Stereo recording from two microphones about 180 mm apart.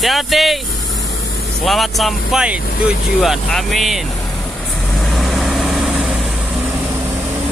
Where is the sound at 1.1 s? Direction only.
65° left (ahead or behind).